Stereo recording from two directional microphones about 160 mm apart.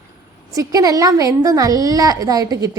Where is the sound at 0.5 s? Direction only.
20° right (ahead or behind).